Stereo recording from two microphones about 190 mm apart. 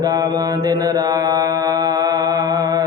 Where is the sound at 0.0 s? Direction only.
20° right (ahead or behind).